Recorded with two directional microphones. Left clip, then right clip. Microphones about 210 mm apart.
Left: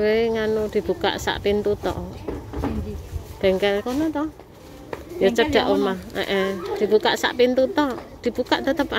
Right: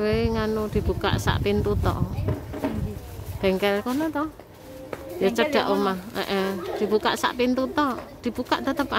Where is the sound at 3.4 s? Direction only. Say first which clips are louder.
Left 3 dB; 20° right (ahead or behind).